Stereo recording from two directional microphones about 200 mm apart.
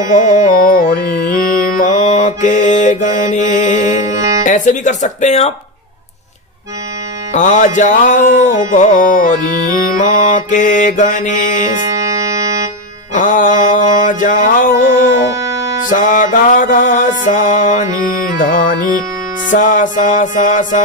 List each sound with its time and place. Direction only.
0.0 s music: 40° left (ahead or behind)
7.3 s music: 40° left (ahead or behind)
11.8 s music: 15° right (ahead or behind)
13.1 s mantra: 40° left (ahead or behind)
15.9 s music: 40° left (ahead or behind)